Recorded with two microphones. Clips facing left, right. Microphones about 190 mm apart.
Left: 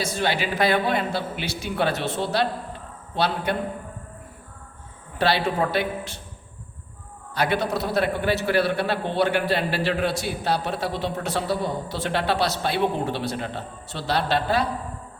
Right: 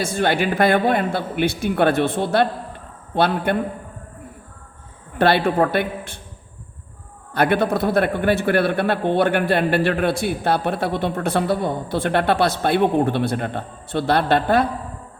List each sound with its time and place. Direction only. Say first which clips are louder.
0.0 s a man's voice: right 5 dB; 50° right (ahead or behind)
5.1 s a man's voice: right 5 dB; 55° right (ahead or behind)
7.3 s a man's voice: right 5 dB; 55° right (ahead or behind)